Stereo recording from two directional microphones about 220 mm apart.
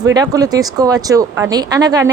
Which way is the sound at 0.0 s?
15° right (ahead or behind).